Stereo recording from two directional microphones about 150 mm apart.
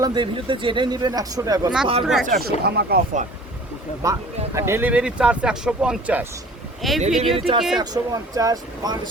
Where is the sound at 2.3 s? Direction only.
90° right.